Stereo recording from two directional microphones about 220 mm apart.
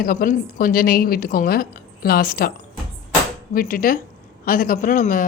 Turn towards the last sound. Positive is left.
turn(degrees=40)  # may be behind; listen again after turning